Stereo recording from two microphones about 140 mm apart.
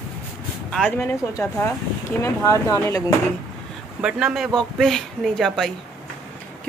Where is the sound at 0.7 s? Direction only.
10° left (ahead or behind).